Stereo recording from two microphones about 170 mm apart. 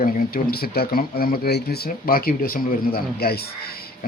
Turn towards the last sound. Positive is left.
turn(degrees=65)  # may be behind; listen again after turning